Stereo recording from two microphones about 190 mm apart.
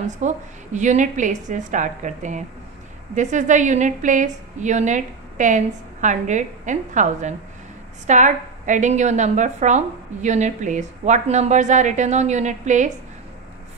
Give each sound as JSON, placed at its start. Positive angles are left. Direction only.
{"t": 0.2, "sound": "a woman's voice", "side_deg": -40}